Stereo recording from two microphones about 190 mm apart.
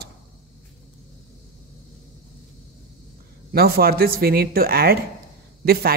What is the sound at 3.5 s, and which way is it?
A man's voice, 55° right (ahead or behind).